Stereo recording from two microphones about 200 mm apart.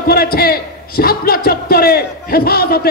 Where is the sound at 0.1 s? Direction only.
50° left (ahead or behind).